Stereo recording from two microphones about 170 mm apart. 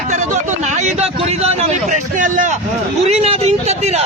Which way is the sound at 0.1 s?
45° right (ahead or behind).